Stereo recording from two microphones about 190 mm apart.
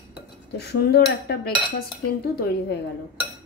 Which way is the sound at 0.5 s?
60° left (ahead or behind).